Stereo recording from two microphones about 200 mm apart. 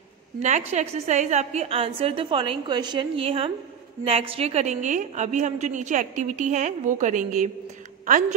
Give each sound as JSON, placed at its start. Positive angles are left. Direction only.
{"t": 0.4, "sound": "a woman's voice", "side_deg": -35}